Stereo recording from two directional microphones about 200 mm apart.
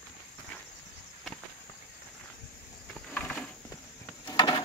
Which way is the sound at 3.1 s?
5° left (ahead or behind).